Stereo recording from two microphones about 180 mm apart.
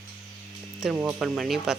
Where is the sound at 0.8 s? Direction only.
5° right (ahead or behind).